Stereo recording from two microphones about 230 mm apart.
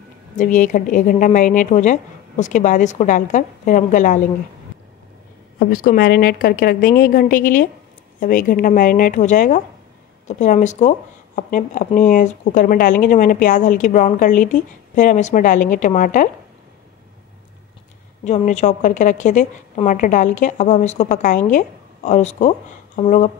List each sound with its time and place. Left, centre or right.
0.4 s speech: left
5.6 s speech: left
18.2 s speech: left